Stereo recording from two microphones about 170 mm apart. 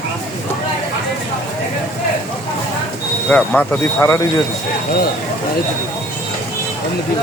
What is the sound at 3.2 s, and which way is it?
Speech, 5° left (ahead or behind).